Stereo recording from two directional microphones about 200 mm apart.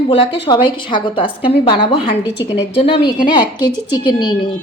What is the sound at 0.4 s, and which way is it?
A woman's voice, 25° left (ahead or behind).